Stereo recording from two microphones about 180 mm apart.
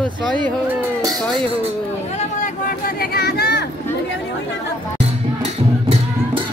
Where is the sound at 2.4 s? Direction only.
55° left (ahead or behind).